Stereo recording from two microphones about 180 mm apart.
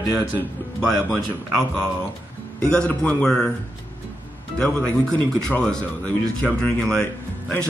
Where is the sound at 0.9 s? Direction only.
Centre (ahead or behind).